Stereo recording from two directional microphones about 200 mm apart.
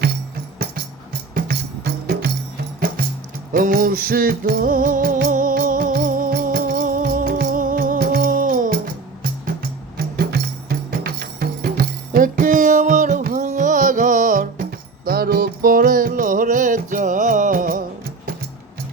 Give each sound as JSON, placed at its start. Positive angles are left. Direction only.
{"t": 1.3, "sound": "music", "side_deg": -50}
{"t": 3.5, "sound": "music", "side_deg": -45}
{"t": 10.2, "sound": "music", "side_deg": -50}